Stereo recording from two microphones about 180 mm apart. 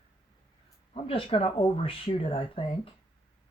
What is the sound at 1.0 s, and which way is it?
Speech, 30° left (ahead or behind).